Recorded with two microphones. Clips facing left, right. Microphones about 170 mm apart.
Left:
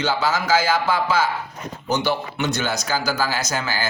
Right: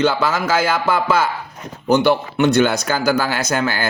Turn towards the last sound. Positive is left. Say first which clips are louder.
# right 5 dB
turn(degrees=-60)  # may be behind; listen again after turning